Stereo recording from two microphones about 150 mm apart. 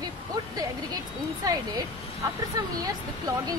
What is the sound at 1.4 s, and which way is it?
Speech, 25° right (ahead or behind).